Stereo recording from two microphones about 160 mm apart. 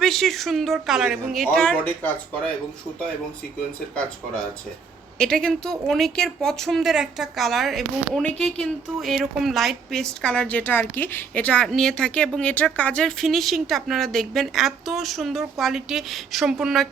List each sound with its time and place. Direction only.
0.0 s a woman's voice: centre (ahead or behind)
5.1 s a woman's voice: 5° left (ahead or behind)